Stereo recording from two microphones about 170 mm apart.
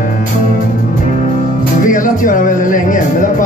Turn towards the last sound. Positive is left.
turn(degrees=50)  # may be behind; listen again after turning